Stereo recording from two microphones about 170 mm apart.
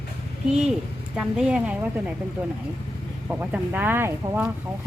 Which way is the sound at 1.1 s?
5° right (ahead or behind).